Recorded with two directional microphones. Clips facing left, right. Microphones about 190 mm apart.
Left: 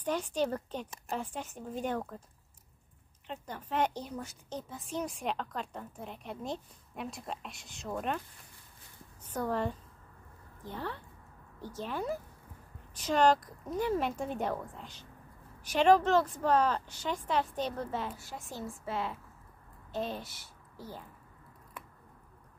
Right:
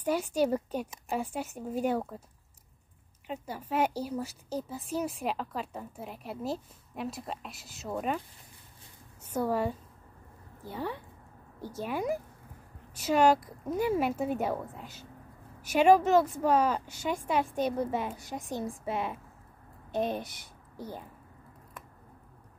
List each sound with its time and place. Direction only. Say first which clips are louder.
0.0 s speech: right 4 dB; 10° right (ahead or behind)
3.3 s a woman's voice: right 4 dB; 10° right (ahead or behind)
9.3 s a child's voice: right 4 dB; 10° right (ahead or behind)